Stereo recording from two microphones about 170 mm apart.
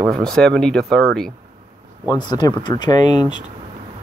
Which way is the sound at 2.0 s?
25° left (ahead or behind).